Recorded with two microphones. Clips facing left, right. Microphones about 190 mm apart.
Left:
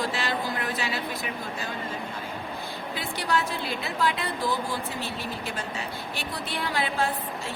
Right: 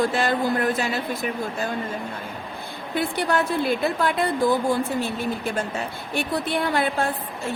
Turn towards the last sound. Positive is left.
turn(degrees=-55)  # may be behind; listen again after turning